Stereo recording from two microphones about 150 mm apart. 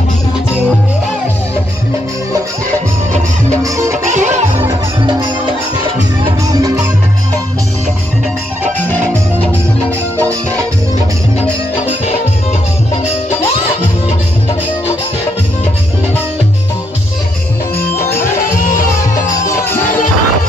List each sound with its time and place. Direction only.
3.6 s music: 20° right (ahead or behind)
4.0 s music: 55° right (ahead or behind)
6.4 s music: 20° right (ahead or behind)
9.8 s music: 10° left (ahead or behind)
17.7 s music: 15° left (ahead or behind)
18.6 s music: 65° left (ahead or behind)
19.4 s music: 15° left (ahead or behind)